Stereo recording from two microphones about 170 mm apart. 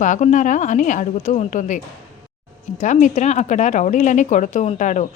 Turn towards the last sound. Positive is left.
turn(degrees=45)  # may be behind; listen again after turning